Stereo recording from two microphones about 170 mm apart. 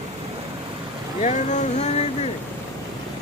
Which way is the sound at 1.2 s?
45° left (ahead or behind).